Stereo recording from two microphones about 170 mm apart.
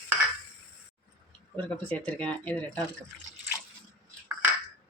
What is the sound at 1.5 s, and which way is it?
Speech, 10° left (ahead or behind).